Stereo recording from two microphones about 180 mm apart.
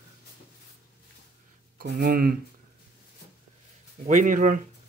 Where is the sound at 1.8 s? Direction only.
60° right (ahead or behind).